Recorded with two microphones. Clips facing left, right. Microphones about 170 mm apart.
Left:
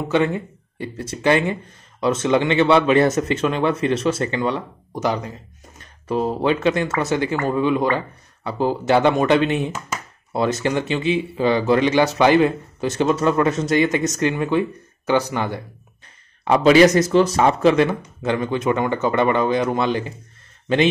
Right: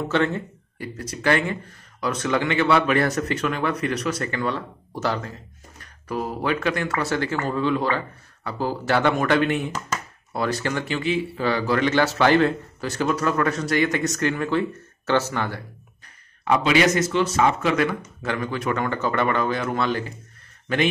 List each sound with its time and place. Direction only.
0.1 s speech: 15° left (ahead or behind)
0.9 s speech: 25° left (ahead or behind)
16.4 s speech: 35° left (ahead or behind)